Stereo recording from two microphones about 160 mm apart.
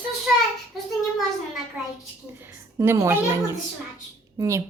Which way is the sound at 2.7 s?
20° right (ahead or behind).